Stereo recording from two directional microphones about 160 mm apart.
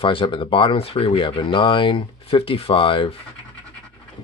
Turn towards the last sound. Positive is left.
turn(degrees=35)  # may be behind; listen again after turning